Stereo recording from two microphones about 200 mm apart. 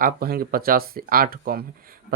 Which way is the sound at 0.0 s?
50° right (ahead or behind).